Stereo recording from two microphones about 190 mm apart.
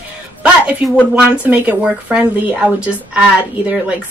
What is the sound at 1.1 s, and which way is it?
A woman's voice, 5° right (ahead or behind).